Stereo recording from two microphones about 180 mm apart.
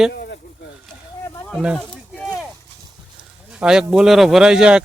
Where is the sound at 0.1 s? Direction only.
65° left (ahead or behind).